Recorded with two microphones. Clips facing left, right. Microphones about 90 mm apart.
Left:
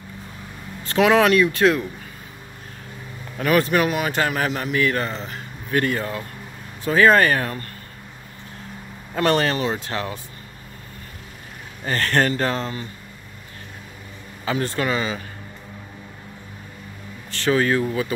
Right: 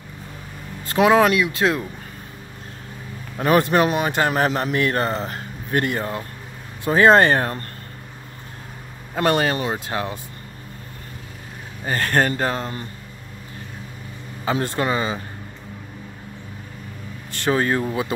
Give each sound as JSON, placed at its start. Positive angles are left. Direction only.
{"t": 0.9, "sound": "speech", "side_deg": -20}
{"t": 1.6, "sound": "speech", "side_deg": -25}
{"t": 3.3, "sound": "a man's voice", "side_deg": -30}
{"t": 9.1, "sound": "speech", "side_deg": -15}
{"t": 11.8, "sound": "speech", "side_deg": -15}
{"t": 14.4, "sound": "speech", "side_deg": -20}
{"t": 17.4, "sound": "speech", "side_deg": -25}